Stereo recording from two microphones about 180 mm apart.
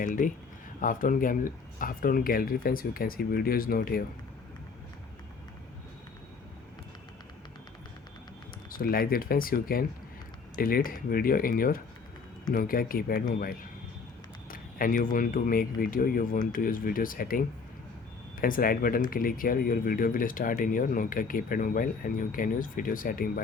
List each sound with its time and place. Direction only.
0.0 s speech: 45° left (ahead or behind)
8.7 s speech: 55° left (ahead or behind)